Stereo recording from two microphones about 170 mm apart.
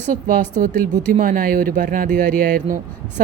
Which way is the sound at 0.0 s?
45° right (ahead or behind).